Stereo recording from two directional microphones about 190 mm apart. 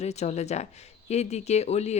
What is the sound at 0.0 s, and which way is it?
A woman's voice, 35° left (ahead or behind).